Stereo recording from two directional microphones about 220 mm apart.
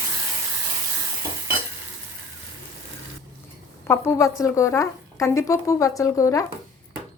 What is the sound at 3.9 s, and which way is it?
Speech, 10° left (ahead or behind).